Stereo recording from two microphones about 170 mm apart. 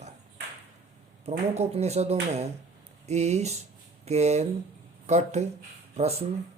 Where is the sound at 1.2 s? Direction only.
40° right (ahead or behind).